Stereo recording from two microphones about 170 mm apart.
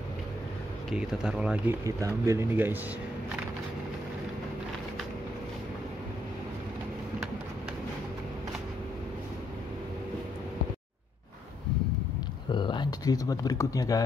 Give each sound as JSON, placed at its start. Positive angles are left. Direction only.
{"t": 0.8, "sound": "speech", "side_deg": -5}
{"t": 1.9, "sound": "speech", "side_deg": -20}
{"t": 12.4, "sound": "speech", "side_deg": 25}